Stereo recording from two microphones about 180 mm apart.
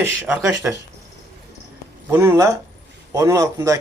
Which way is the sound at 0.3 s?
15° right (ahead or behind).